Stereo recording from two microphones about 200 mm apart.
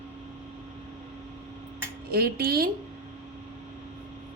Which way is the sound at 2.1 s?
50° right (ahead or behind).